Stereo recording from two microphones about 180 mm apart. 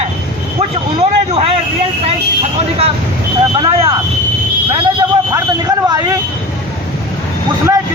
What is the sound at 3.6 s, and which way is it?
Speech, 30° right (ahead or behind).